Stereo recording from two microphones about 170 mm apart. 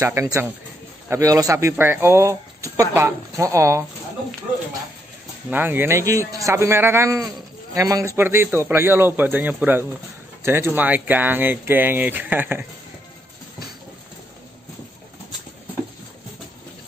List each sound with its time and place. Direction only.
0.0 s speech: 15° right (ahead or behind)
5.5 s speech: 10° right (ahead or behind)